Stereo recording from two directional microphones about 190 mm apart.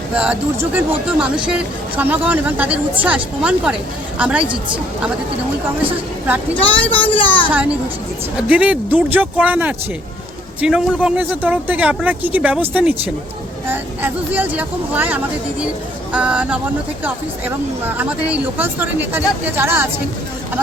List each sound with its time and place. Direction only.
0.1 s a woman's voice: 5° right (ahead or behind)
6.2 s speech: 10° right (ahead or behind)
6.9 s speech: 30° left (ahead or behind)
7.3 s speech: 10° left (ahead or behind)
8.4 s speech: 5° right (ahead or behind)